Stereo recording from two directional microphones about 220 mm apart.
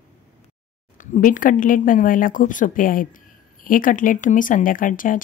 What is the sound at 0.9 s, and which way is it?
A woman's voice, 35° left (ahead or behind).